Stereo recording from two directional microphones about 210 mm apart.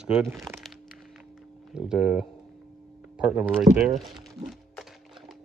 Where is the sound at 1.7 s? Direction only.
5° right (ahead or behind).